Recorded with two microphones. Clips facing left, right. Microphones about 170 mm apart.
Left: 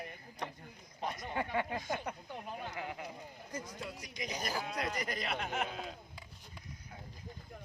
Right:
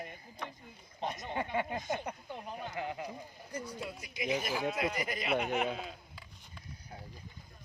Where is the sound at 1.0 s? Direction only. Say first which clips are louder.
Right 1 dB; 25° right (ahead or behind).